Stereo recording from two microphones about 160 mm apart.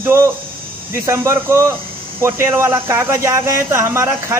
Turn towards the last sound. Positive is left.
turn(degrees=-20)  # may be behind; listen again after turning